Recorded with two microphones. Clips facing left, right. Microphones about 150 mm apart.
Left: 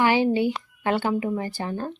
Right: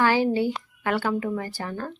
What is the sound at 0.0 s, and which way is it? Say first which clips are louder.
Speech: left 1 dB; 20° left (ahead or behind).